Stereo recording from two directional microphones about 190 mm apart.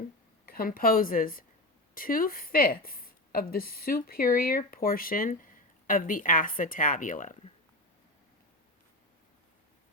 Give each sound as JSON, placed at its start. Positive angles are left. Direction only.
{"t": 0.4, "sound": "a woman's voice", "side_deg": 50}